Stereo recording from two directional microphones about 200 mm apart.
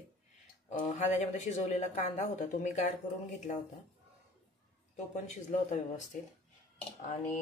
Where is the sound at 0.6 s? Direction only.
35° left (ahead or behind).